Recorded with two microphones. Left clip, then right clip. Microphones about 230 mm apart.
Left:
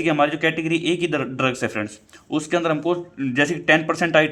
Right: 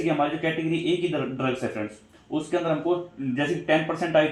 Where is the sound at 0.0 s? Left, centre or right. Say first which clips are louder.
Left 6 dB; left.